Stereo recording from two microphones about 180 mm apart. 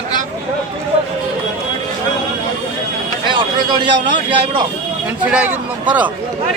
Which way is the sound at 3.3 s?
25° right (ahead or behind).